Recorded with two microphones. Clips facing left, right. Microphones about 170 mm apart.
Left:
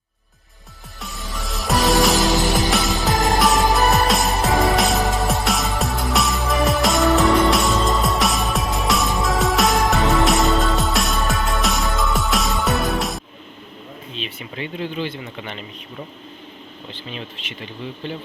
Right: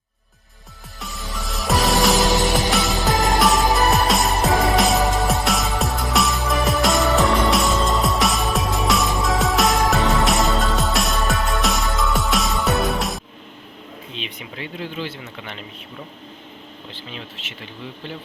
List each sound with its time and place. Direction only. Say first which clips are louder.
1.0 s music: even; centre (ahead or behind)
14.2 s a sound: left 2 dB; 65° right (ahead or behind)
14.5 s speech: left 4 dB; 5° right (ahead or behind)
16.9 s speech: left 4 dB; centre (ahead or behind)